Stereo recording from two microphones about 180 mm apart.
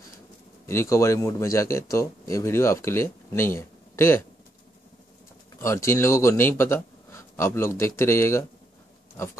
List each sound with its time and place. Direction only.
0.7 s a man's voice: 15° left (ahead or behind)
5.6 s a man's voice: 15° left (ahead or behind)
9.1 s a sound: 15° left (ahead or behind)